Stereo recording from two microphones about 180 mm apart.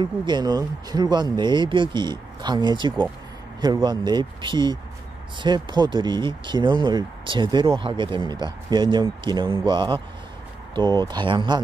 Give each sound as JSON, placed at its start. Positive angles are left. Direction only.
{"t": 0.0, "sound": "speech", "side_deg": -25}